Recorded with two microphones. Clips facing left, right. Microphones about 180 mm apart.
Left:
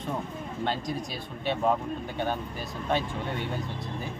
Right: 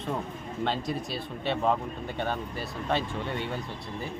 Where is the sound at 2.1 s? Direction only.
5° left (ahead or behind).